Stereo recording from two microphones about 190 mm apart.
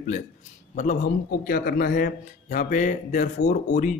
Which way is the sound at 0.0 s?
40° left (ahead or behind).